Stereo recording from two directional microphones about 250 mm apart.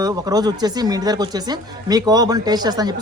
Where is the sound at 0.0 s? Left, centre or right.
Centre.